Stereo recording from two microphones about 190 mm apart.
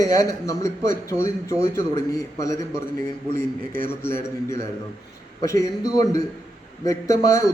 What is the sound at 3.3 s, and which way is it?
Speech, 45° right (ahead or behind).